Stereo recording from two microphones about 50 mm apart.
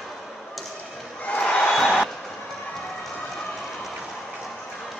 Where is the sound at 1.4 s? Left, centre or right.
Centre.